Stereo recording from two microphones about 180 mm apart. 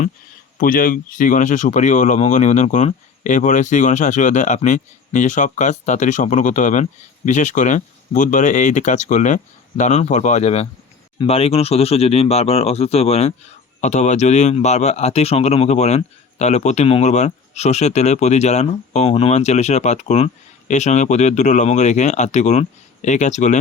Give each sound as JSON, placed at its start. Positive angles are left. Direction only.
{"t": 0.6, "sound": "speech", "side_deg": 50}